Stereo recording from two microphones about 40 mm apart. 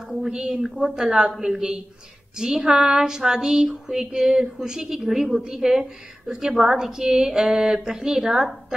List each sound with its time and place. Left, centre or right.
0.3 s a woman's voice: centre